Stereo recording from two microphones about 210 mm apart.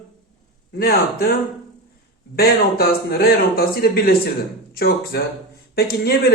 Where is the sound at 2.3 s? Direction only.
50° left (ahead or behind).